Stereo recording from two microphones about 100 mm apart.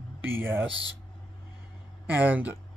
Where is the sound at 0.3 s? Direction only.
20° right (ahead or behind).